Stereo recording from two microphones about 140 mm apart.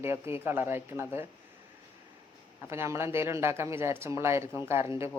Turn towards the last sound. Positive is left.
turn(degrees=-20)  # may be behind; listen again after turning